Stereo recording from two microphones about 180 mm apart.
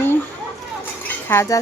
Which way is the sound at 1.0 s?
15° left (ahead or behind).